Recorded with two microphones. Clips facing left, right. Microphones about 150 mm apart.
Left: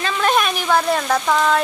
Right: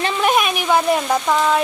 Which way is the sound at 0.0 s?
15° right (ahead or behind).